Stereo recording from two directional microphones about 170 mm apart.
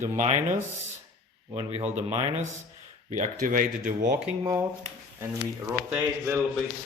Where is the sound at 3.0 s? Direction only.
50° right (ahead or behind).